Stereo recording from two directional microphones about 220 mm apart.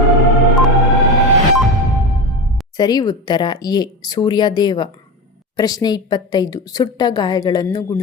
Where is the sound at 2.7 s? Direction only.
20° left (ahead or behind).